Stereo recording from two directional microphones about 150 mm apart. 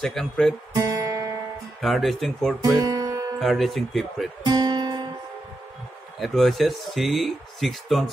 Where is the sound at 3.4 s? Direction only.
Centre (ahead or behind).